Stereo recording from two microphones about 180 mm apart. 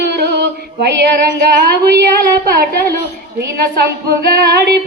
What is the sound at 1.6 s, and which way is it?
Speech, 60° right (ahead or behind).